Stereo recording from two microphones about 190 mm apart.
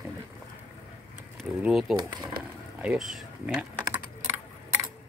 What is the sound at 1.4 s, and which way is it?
Speech, centre (ahead or behind).